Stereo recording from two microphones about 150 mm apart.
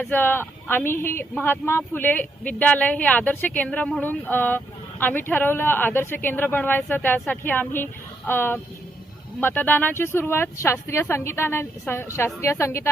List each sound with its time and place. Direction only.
0.0 s speech: 15° left (ahead or behind)